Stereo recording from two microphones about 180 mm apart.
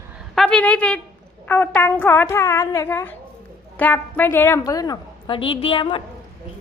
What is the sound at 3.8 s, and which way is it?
A woman's voice, 10° left (ahead or behind).